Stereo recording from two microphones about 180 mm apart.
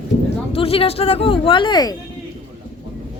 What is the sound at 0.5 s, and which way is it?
Speech, 30° left (ahead or behind).